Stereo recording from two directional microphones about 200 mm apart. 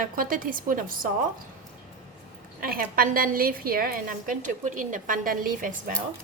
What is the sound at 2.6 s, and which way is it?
A woman's voice, 45° right (ahead or behind).